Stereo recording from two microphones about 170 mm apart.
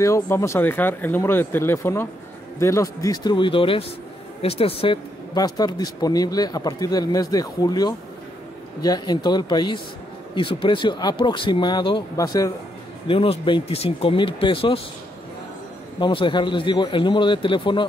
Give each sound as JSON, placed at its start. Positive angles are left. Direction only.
{"t": 0.0, "sound": "speech", "side_deg": 15}
{"t": 5.3, "sound": "speech", "side_deg": 25}
{"t": 13.1, "sound": "speech", "side_deg": 30}
{"t": 16.0, "sound": "speech", "side_deg": 30}